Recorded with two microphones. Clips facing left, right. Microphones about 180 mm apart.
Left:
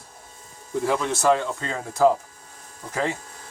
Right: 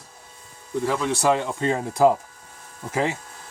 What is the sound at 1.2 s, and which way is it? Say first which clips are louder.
Speech: right 1 dB; 15° right (ahead or behind).